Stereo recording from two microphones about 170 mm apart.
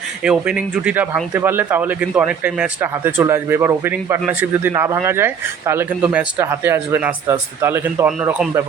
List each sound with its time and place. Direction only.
0.3 s speech: 10° right (ahead or behind)